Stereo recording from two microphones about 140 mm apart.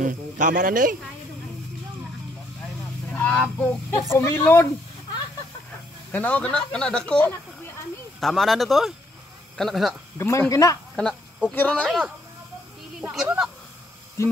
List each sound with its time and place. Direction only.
0.0 s speech: 65° right (ahead or behind)
3.1 s speech: 10° left (ahead or behind)
6.1 s speech: 10° left (ahead or behind)
10.1 s speech: 20° left (ahead or behind)
11.0 s speech: 5° left (ahead or behind)
13.1 s speech: 5° right (ahead or behind)